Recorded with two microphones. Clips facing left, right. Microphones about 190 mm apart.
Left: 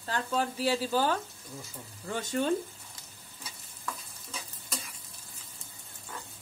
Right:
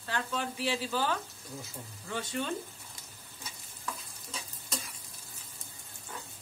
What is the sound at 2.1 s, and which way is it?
Speech, 45° left (ahead or behind).